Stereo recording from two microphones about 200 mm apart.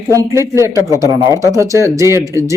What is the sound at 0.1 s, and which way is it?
Speech, 15° right (ahead or behind).